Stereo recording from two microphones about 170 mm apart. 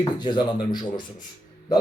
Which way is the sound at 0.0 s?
25° left (ahead or behind).